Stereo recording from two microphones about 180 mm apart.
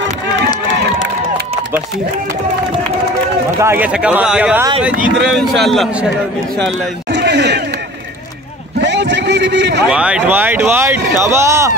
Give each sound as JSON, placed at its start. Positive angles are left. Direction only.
{"t": 3.6, "sound": "a man's voice", "side_deg": -10}
{"t": 7.1, "sound": "chatter", "side_deg": -75}
{"t": 8.8, "sound": "a sound", "side_deg": -80}
{"t": 9.8, "sound": "speech", "side_deg": -5}